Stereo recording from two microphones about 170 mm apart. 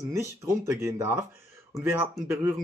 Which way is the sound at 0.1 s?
15° right (ahead or behind).